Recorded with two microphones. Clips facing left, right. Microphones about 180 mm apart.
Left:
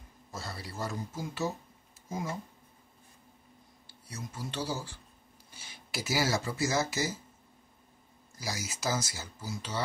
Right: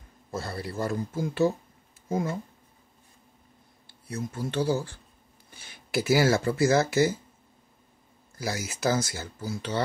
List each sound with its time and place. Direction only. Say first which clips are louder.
0.3 s speech: right 8 dB; 55° right (ahead or behind)
3.8 s speech: right 10 dB; 55° right (ahead or behind)
8.4 s speech: right 7 dB; 55° right (ahead or behind)